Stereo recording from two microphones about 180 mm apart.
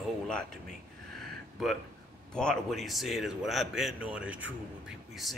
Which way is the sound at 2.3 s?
5° left (ahead or behind).